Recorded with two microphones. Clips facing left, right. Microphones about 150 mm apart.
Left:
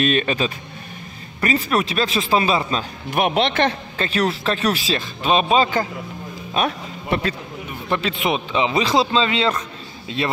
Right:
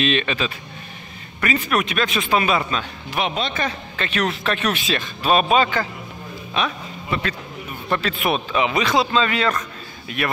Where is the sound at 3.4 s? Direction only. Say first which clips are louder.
Left 6 dB; 75° left (ahead or behind).